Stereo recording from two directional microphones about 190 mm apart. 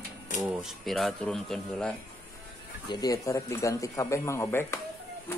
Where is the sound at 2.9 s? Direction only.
20° left (ahead or behind).